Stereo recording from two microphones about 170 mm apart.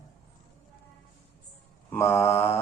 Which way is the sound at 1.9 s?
15° left (ahead or behind).